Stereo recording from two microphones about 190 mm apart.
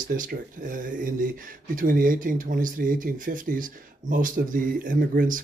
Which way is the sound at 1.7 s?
45° right (ahead or behind).